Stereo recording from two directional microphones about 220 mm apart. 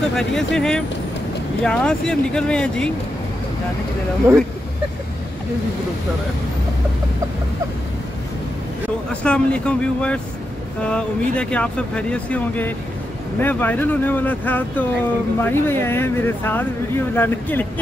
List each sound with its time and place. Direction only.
0.1 s speech: centre (ahead or behind)
4.3 s speech: 10° right (ahead or behind)
9.1 s speech: 5° left (ahead or behind)